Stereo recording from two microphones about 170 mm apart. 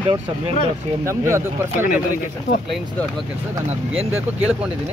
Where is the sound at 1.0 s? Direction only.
15° right (ahead or behind).